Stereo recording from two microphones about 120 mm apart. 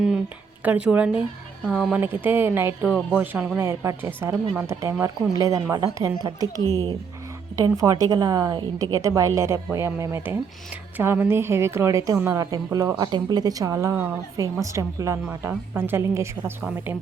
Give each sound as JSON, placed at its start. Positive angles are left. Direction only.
{"t": 0.6, "sound": "a woman's voice", "side_deg": -10}
{"t": 7.5, "sound": "a woman's voice", "side_deg": -30}
{"t": 13.9, "sound": "speech", "side_deg": -15}
{"t": 14.3, "sound": "a woman's voice", "side_deg": -25}